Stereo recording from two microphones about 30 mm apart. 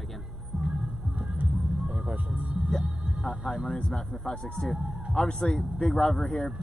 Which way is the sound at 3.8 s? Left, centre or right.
Centre.